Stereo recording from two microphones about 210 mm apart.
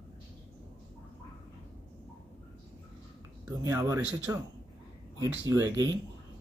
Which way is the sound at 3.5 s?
15° right (ahead or behind).